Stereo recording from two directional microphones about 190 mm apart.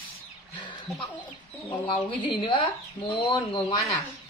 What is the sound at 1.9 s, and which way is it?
A woman's voice, 25° left (ahead or behind).